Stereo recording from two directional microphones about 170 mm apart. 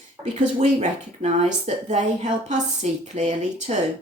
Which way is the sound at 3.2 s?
45° right (ahead or behind).